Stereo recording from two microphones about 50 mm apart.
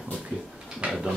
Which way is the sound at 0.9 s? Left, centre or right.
Centre.